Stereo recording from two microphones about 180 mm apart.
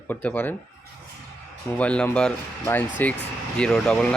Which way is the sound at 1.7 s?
5° left (ahead or behind).